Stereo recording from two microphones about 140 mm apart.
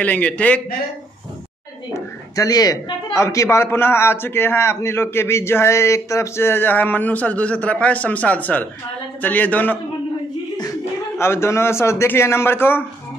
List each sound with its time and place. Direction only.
0.0 s a man's voice: 10° left (ahead or behind)
2.0 s a man's voice: 25° left (ahead or behind)
11.1 s a man's voice: 20° left (ahead or behind)